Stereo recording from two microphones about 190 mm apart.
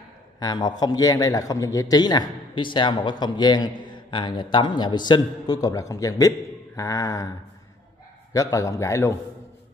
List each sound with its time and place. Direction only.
0.4 s a man's voice: 20° left (ahead or behind)
8.3 s a man's voice: 15° left (ahead or behind)